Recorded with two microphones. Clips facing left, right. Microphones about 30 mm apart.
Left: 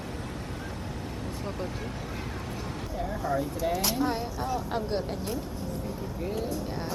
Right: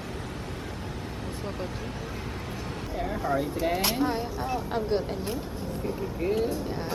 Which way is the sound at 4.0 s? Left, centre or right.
Centre.